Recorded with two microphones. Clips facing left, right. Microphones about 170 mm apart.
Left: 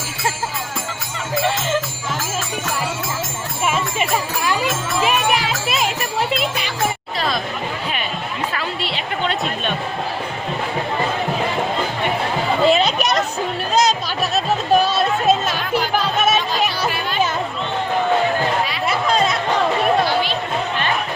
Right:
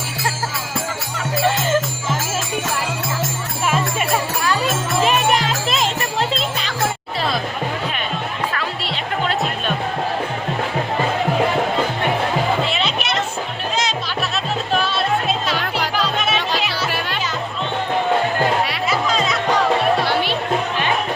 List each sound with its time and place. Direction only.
5.0 s jingle bell: 10° left (ahead or behind)
8.5 s music: centre (ahead or behind)
12.6 s music: 40° left (ahead or behind)
18.9 s music: 55° left (ahead or behind)